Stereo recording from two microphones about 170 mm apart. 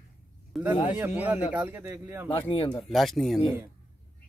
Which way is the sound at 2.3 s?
30° left (ahead or behind).